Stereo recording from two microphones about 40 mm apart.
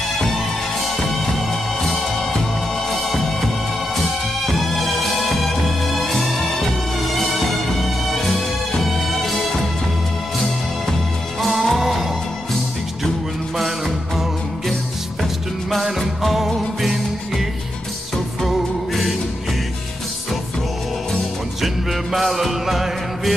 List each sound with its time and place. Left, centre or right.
0.8 s music: centre
4.5 s music: centre
11.4 s music: centre
13.6 s music: centre
15.8 s music: centre
18.5 s music: centre
22.1 s music: centre